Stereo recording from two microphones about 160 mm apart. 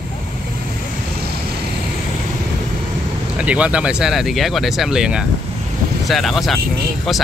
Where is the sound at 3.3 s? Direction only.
10° right (ahead or behind).